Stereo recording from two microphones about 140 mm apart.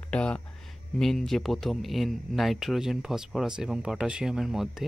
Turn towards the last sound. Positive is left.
turn(degrees=0)  # may be behind; listen again after turning